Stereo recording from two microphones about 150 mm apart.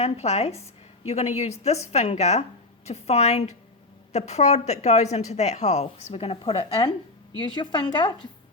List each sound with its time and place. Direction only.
0.0 s a woman's voice: 45° left (ahead or behind)